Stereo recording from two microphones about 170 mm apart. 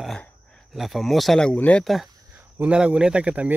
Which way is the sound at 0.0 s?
5° left (ahead or behind).